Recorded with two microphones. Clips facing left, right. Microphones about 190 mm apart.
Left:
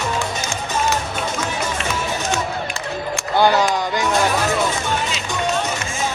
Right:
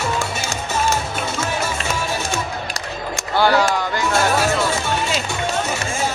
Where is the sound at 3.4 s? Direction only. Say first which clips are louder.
Even; 20° left (ahead or behind).